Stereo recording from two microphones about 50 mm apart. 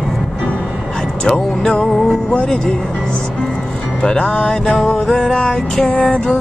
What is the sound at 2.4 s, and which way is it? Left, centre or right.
Speech, centre.